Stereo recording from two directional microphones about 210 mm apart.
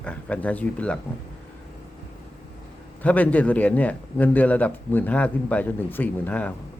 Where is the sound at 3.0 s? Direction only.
5° left (ahead or behind).